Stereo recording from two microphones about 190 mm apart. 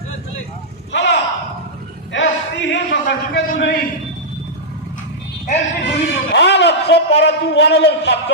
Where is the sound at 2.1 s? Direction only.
65° left (ahead or behind).